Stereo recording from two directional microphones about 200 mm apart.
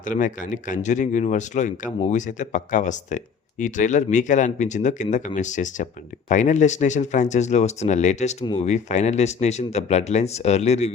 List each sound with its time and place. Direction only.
0.0 s speech: 40° left (ahead or behind)